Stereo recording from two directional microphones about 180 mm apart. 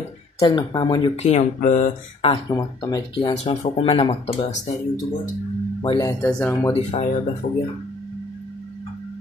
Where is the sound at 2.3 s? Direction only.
20° left (ahead or behind); by 4.6 s 35° left (ahead or behind).